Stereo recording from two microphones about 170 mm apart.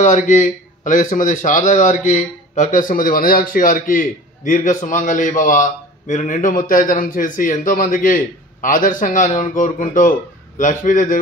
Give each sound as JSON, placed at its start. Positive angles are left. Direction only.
{"t": 0.1, "sound": "a man's voice", "side_deg": 45}